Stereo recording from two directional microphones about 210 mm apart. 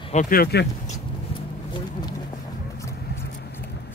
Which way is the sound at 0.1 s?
40° left (ahead or behind).